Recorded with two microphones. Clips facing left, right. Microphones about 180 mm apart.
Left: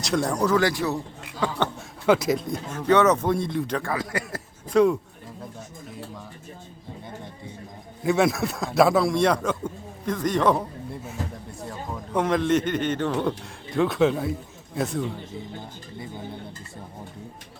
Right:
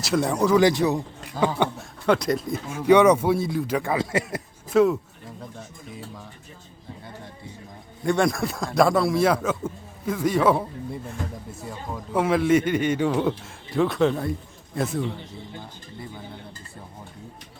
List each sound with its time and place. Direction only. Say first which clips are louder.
0.0 s a man's voice: right 1 dB; centre (ahead or behind)
0.6 s speech: right 5 dB; 20° right (ahead or behind)
2.0 s a man's voice: left 1 dB; 5° left (ahead or behind)
3.8 s speech: right 4 dB; 25° right (ahead or behind)
4.7 s a man's voice: even; 5° right (ahead or behind)
8.0 s a man's voice: left 1 dB; 5° left (ahead or behind)